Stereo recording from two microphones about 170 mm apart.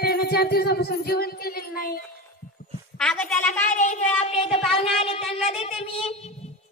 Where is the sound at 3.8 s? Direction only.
40° left (ahead or behind).